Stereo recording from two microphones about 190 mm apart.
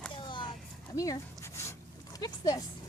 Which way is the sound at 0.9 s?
20° left (ahead or behind).